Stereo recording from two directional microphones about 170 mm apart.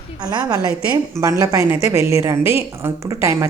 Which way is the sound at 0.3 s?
25° right (ahead or behind).